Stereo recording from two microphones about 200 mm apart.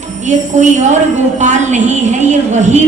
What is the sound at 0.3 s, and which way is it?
Speech, 35° right (ahead or behind).